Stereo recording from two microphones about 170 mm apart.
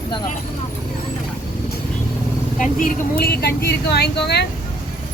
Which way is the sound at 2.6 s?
50° left (ahead or behind).